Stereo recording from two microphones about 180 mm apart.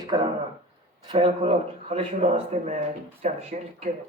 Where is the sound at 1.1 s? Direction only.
25° right (ahead or behind).